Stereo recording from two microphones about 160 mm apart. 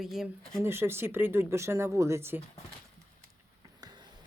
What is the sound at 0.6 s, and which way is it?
Speech, 15° right (ahead or behind).